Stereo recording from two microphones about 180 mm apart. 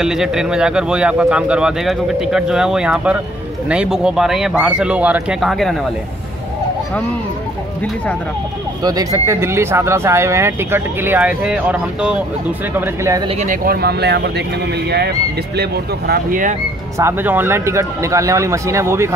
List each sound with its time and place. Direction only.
0.0 s speech: 5° right (ahead or behind)
8.8 s speech: 20° right (ahead or behind)
13.4 s speech: 50° right (ahead or behind)
15.5 s speech: 60° right (ahead or behind)
17.0 s speech: 10° right (ahead or behind)